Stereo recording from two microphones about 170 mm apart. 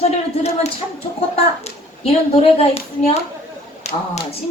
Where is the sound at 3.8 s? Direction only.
40° left (ahead or behind).